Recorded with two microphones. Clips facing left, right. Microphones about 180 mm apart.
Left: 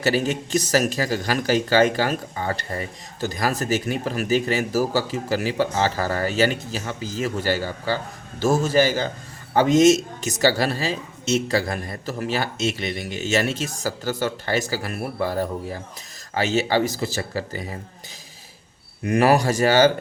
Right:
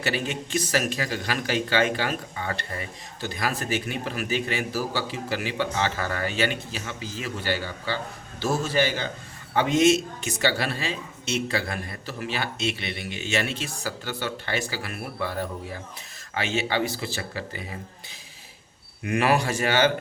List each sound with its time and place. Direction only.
0.0 s a man's voice: 40° left (ahead or behind)
19.0 s speech: 40° left (ahead or behind)